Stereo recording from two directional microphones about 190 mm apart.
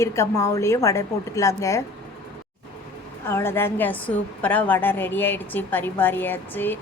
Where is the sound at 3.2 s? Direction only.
10° left (ahead or behind).